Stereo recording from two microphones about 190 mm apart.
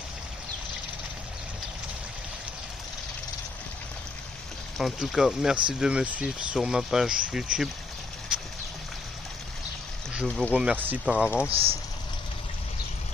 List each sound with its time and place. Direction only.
4.7 s speech: centre (ahead or behind)
10.2 s speech: 5° left (ahead or behind)
10.5 s speech: 5° right (ahead or behind)
11.5 s speech: 30° right (ahead or behind)